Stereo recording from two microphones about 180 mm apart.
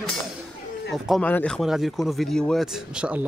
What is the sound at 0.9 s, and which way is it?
Speech, 5° left (ahead or behind).